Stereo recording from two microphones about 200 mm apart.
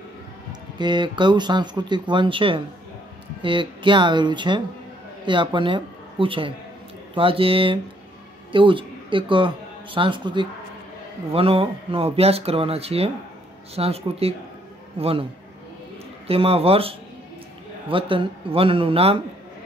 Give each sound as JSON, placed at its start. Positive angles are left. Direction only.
{"t": 0.5, "sound": "speech", "side_deg": -20}
{"t": 16.3, "sound": "speech", "side_deg": -30}